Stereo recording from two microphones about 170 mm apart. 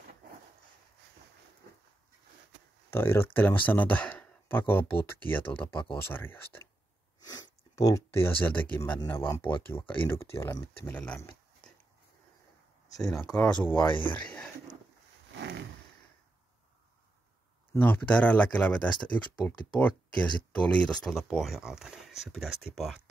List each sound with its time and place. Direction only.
2.9 s speech: 15° left (ahead or behind)
7.2 s sneeze: 25° left (ahead or behind)
7.8 s speech: 15° left (ahead or behind)
13.2 s speech: 10° left (ahead or behind)
13.8 s speech: 30° left (ahead or behind)
14.1 s speech: 5° left (ahead or behind)
15.3 s a sound: 90° right
17.7 s speech: 10° left (ahead or behind)